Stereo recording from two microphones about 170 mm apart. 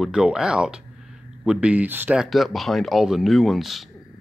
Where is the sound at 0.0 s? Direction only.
5° right (ahead or behind).